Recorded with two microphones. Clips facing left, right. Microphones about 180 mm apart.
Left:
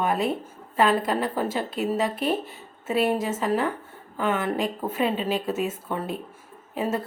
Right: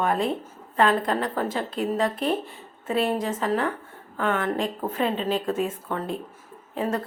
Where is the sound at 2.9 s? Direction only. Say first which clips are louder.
Left 1 dB; 5° left (ahead or behind).